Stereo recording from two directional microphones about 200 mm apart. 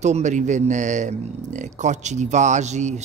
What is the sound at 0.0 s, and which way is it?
Speech, 35° right (ahead or behind).